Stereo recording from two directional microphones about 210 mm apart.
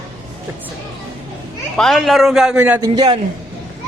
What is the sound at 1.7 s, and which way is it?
A man's voice, centre (ahead or behind).